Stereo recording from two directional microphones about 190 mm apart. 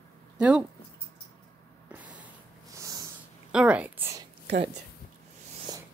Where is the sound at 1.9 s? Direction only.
10° right (ahead or behind).